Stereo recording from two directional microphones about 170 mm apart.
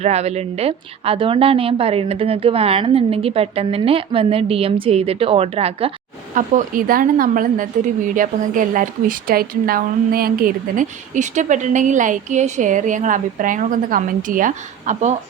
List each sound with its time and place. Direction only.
0.0 s a woman's voice: 40° right (ahead or behind)
6.3 s a woman's voice: 50° right (ahead or behind)